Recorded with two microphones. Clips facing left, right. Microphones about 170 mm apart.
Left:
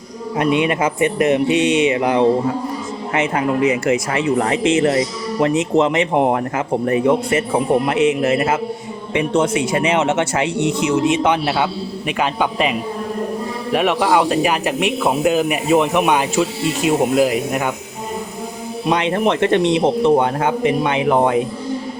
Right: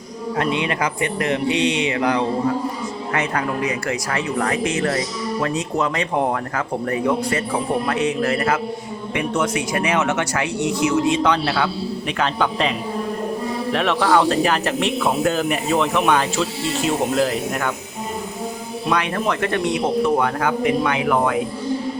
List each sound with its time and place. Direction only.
0.3 s speech: 20° left (ahead or behind)
13.7 s speech: 15° left (ahead or behind)
18.9 s speech: 20° left (ahead or behind)